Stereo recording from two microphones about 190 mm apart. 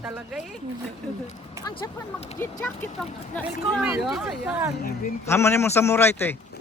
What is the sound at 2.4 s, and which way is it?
Speech, 10° left (ahead or behind).